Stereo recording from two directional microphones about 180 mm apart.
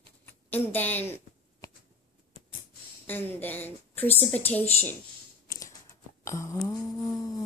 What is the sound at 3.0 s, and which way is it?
A woman's voice, 10° left (ahead or behind).